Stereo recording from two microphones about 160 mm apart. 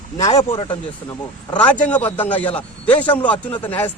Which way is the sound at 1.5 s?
10° left (ahead or behind).